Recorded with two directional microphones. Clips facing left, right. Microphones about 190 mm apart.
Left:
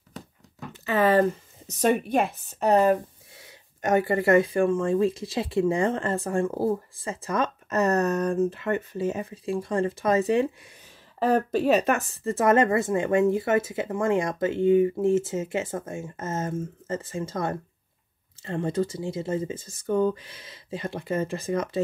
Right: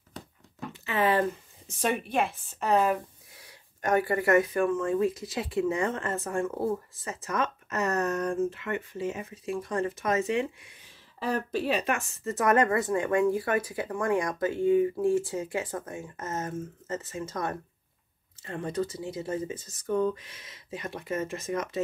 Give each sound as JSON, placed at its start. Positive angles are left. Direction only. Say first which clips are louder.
{"t": 0.8, "sound": "a sound", "louder": "left 5 dB", "side_deg": 40}
{"t": 1.7, "sound": "speech", "louder": "left 6 dB", "side_deg": 40}
{"t": 3.3, "sound": "speech", "louder": "left 3 dB", "side_deg": 25}